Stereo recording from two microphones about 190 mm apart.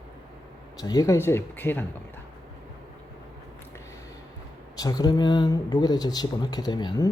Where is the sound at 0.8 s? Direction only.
20° left (ahead or behind).